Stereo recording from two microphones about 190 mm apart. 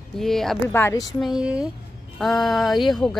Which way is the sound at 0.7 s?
15° left (ahead or behind).